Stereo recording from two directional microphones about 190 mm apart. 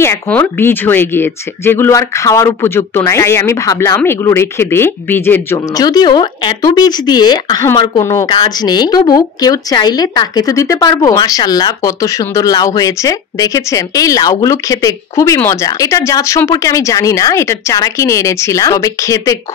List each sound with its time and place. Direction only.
0.0 s a woman's voice: 10° left (ahead or behind)